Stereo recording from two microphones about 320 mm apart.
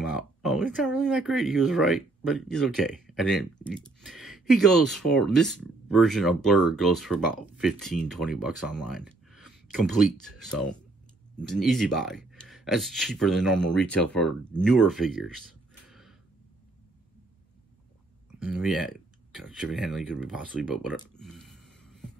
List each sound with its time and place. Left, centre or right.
0.0 s speech: centre
15.9 s a sound: centre
18.4 s speech: centre